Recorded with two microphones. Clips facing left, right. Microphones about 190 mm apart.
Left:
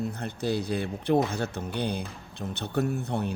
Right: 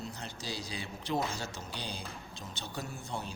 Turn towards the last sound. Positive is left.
turn(degrees=60)  # may be behind; listen again after turning